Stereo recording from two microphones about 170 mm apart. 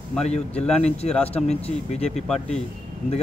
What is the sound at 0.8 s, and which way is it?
Speech, 40° left (ahead or behind).